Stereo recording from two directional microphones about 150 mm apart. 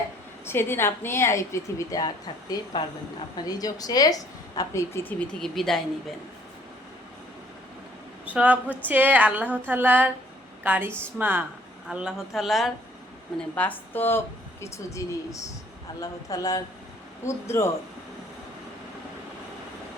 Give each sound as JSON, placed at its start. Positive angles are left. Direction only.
{"t": 0.4, "sound": "speech", "side_deg": 15}
{"t": 5.3, "sound": "speech", "side_deg": 5}
{"t": 8.2, "sound": "a woman's voice", "side_deg": -10}
{"t": 13.6, "sound": "speech", "side_deg": 10}